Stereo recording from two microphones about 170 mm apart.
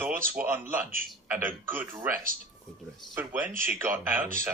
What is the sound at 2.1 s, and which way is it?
Speech, 55° right (ahead or behind).